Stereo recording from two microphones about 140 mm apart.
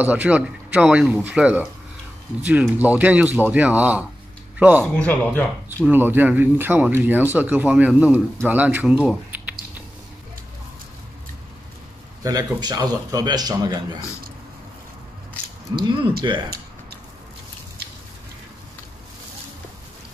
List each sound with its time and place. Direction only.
0.0 s speech: 10° right (ahead or behind)
5.0 s speech: 10° left (ahead or behind)
5.9 s speech: 15° right (ahead or behind)
12.2 s a man's voice: 25° right (ahead or behind)
16.2 s a man's voice: 30° right (ahead or behind)